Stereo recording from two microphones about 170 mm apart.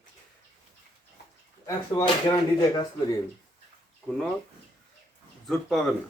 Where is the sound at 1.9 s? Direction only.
25° left (ahead or behind).